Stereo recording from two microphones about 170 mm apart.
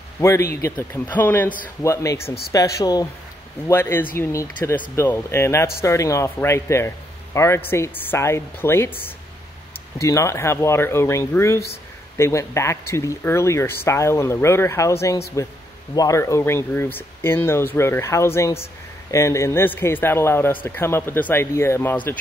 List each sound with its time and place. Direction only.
0.2 s a man's voice: 15° left (ahead or behind)
9.9 s a man's voice: 15° left (ahead or behind)